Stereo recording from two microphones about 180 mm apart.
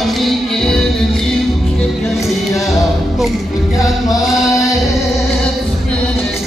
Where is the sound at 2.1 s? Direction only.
Centre (ahead or behind).